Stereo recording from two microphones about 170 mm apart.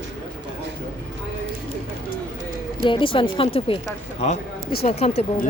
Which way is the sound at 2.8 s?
30° left (ahead or behind).